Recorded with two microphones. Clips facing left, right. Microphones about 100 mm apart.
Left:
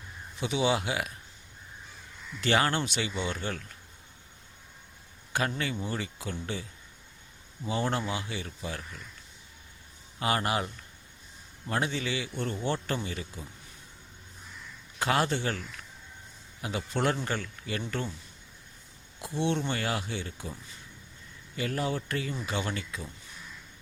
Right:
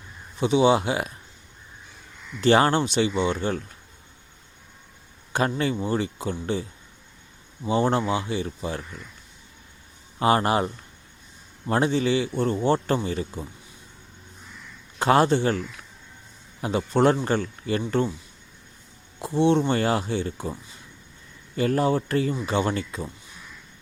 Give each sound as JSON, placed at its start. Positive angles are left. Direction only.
{"t": 0.3, "sound": "a man's voice", "side_deg": -30}
{"t": 2.4, "sound": "speech", "side_deg": -30}
{"t": 5.3, "sound": "speech", "side_deg": -30}
{"t": 10.2, "sound": "a man's voice", "side_deg": -30}
{"t": 14.9, "sound": "a man's voice", "side_deg": -35}
{"t": 19.2, "sound": "a man's voice", "side_deg": -30}